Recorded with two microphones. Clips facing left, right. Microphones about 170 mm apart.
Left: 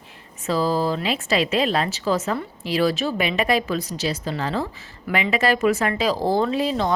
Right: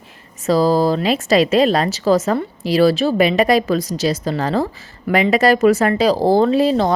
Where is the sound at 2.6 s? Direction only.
35° right (ahead or behind).